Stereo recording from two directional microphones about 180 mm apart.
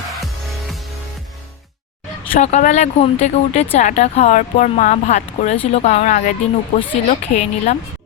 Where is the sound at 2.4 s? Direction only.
40° left (ahead or behind).